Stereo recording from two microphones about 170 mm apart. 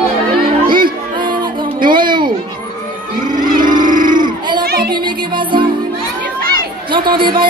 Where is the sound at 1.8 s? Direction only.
25° right (ahead or behind).